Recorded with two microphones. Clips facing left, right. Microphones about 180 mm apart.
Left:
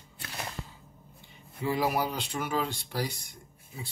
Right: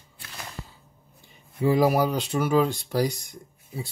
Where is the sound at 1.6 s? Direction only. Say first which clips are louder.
Right 8 dB; 45° right (ahead or behind).